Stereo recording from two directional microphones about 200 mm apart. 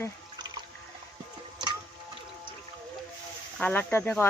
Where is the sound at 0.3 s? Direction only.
20° right (ahead or behind).